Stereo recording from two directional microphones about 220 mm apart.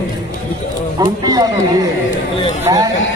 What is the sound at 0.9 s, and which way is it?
A man's voice, 15° right (ahead or behind).